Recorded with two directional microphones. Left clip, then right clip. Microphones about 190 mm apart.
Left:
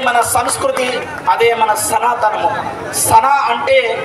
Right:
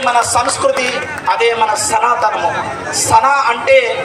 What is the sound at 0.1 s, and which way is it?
Speech, 55° left (ahead or behind).